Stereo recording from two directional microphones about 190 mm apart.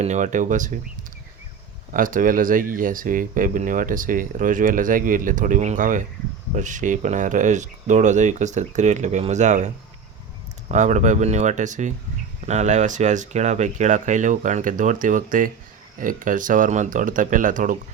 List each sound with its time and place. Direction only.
0.0 s speech: 40° right (ahead or behind)
1.9 s speech: 45° right (ahead or behind)